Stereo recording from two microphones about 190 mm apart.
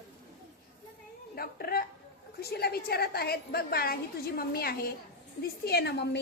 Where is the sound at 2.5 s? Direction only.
55° left (ahead or behind).